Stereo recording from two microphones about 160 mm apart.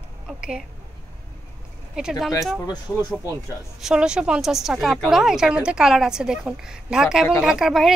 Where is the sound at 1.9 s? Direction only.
5° right (ahead or behind).